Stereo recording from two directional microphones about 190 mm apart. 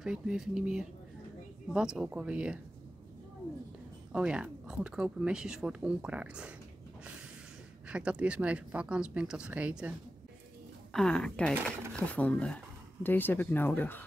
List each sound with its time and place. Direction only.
0.0 s speech: 5° right (ahead or behind)
4.1 s speech: 5° right (ahead or behind)
7.9 s a woman's voice: 5° right (ahead or behind); by 14.0 s 10° left (ahead or behind)